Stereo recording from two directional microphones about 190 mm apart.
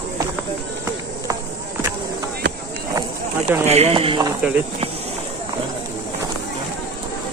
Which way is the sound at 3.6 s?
35° right (ahead or behind).